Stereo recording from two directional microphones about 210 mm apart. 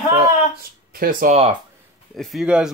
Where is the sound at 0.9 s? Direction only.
40° right (ahead or behind).